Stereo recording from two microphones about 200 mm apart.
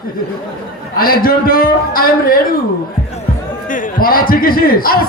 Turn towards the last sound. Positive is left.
turn(degrees=45)  # may be behind; listen again after turning